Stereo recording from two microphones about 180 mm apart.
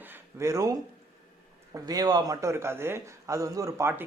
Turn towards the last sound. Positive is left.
turn(degrees=-15)  # may be behind; listen again after turning